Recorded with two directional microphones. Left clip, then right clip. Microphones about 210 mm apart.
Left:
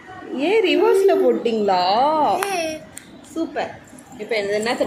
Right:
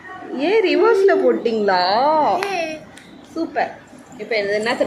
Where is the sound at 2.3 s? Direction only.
60° left (ahead or behind).